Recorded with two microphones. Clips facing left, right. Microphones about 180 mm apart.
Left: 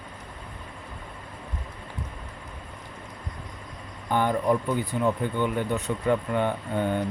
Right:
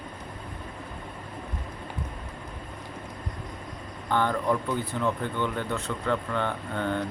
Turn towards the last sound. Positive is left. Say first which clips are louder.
# left 3 dB
turn(degrees=15)  # may be behind; listen again after turning